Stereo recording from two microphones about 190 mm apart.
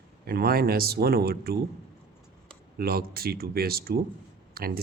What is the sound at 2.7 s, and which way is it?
Speech, 50° right (ahead or behind).